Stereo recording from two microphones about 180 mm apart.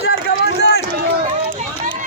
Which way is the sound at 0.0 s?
65° left (ahead or behind).